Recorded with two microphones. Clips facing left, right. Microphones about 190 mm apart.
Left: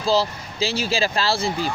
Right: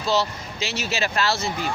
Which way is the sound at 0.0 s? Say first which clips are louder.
Left 3 dB; 30° left (ahead or behind).